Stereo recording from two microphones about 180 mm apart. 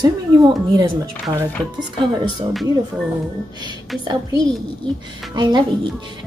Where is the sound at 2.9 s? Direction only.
10° right (ahead or behind).